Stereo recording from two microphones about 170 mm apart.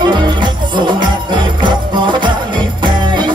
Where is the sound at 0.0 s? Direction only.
25° right (ahead or behind).